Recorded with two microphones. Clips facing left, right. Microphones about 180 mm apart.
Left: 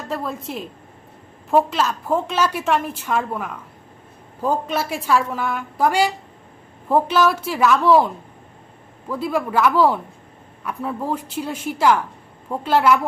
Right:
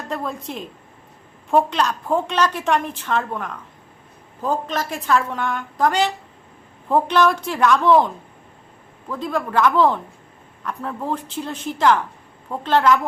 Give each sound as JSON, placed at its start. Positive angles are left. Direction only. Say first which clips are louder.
{"t": 0.1, "sound": "a woman's voice", "louder": "left 1 dB", "side_deg": 0}